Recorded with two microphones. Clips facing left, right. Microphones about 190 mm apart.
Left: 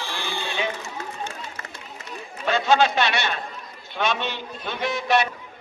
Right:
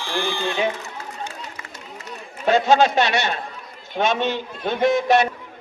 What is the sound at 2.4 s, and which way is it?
A man's voice, 45° right (ahead or behind).